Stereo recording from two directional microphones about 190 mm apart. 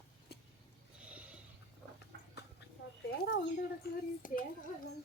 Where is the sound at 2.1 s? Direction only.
60° right (ahead or behind).